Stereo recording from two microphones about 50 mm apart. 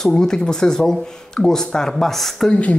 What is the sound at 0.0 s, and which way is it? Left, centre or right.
Speech, centre.